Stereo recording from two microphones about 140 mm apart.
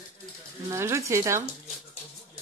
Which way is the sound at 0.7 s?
20° right (ahead or behind).